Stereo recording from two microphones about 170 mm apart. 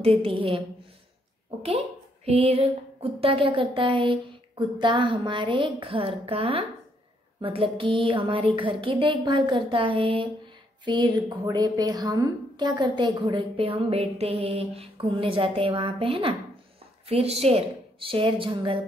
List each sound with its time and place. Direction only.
0.0 s a woman's voice: 35° right (ahead or behind)
2.2 s a woman's voice: 35° right (ahead or behind)